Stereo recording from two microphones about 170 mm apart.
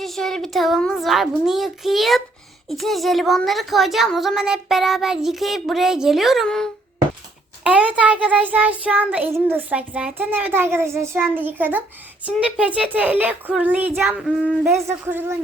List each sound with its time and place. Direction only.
0.0 s a child's voice: centre (ahead or behind)
7.6 s child singing: 5° right (ahead or behind)
14.2 s a child's voice: 5° right (ahead or behind)
14.8 s child singing: 15° right (ahead or behind)